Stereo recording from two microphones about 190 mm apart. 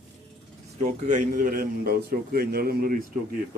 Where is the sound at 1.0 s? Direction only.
40° right (ahead or behind).